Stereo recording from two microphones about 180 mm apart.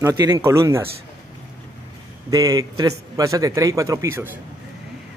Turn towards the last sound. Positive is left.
turn(degrees=-15)  # may be behind; listen again after turning